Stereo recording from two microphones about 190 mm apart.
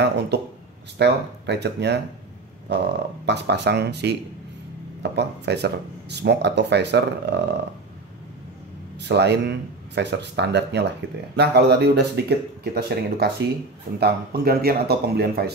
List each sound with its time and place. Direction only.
0.9 s speech: 65° right (ahead or behind)
8.9 s speech: 65° right (ahead or behind)